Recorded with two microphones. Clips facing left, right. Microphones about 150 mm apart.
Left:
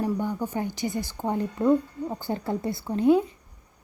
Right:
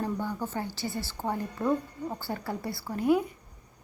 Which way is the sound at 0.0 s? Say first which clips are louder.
Left 4 dB; 15° left (ahead or behind).